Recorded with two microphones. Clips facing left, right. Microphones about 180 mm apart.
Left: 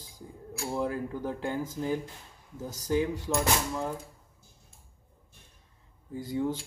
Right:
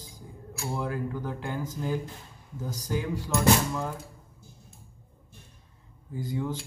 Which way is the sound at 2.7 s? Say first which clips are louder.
Left 3 dB; 25° left (ahead or behind).